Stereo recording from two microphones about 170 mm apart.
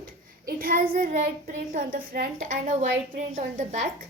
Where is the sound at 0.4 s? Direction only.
55° right (ahead or behind).